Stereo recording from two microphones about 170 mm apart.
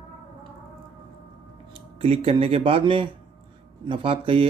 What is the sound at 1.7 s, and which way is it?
Speech, 35° right (ahead or behind).